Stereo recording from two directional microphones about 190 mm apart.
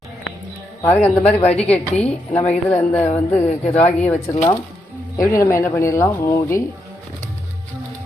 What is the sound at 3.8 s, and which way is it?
Speech, 35° left (ahead or behind).